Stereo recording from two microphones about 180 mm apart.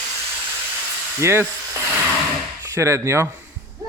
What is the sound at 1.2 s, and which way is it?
Speech, 15° right (ahead or behind).